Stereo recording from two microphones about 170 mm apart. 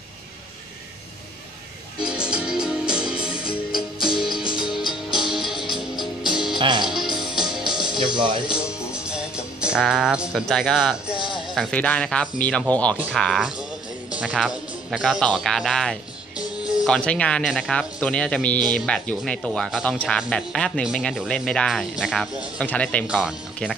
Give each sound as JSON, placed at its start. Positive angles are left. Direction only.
{"t": 2.0, "sound": "music", "side_deg": -5}
{"t": 6.6, "sound": "music", "side_deg": -25}
{"t": 6.9, "sound": "music", "side_deg": 0}
{"t": 8.0, "sound": "speech", "side_deg": -25}
{"t": 8.5, "sound": "music", "side_deg": -5}
{"t": 11.5, "sound": "speech", "side_deg": 5}
{"t": 12.9, "sound": "speech", "side_deg": -10}
{"t": 23.0, "sound": "speech", "side_deg": -5}